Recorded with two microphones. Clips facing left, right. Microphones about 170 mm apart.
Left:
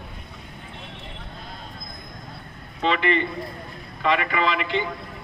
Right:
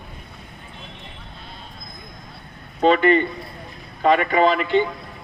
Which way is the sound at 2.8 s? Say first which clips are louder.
Right 7 dB; 40° right (ahead or behind).